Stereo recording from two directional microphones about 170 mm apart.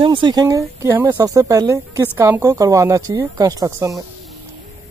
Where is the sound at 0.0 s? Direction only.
30° right (ahead or behind).